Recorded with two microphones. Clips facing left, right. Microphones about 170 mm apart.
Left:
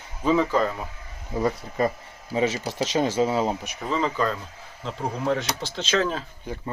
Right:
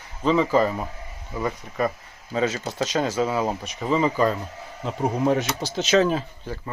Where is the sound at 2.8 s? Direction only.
25° left (ahead or behind).